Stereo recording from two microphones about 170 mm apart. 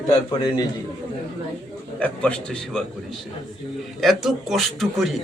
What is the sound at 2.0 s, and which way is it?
Speech, 5° left (ahead or behind).